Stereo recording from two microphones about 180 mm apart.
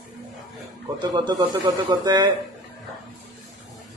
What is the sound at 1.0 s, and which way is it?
Speech, 25° right (ahead or behind).